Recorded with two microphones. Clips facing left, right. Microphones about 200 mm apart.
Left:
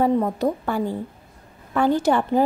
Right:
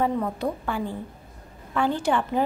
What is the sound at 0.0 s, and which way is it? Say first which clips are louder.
Speech: left 5 dB; 40° left (ahead or behind).